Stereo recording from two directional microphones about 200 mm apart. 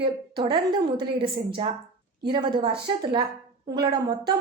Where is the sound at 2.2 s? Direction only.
20° right (ahead or behind).